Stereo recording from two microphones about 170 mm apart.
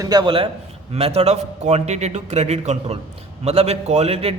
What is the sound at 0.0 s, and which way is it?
A man's voice, 25° right (ahead or behind).